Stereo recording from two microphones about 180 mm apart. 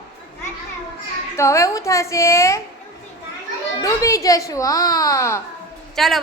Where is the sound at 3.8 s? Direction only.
15° left (ahead or behind).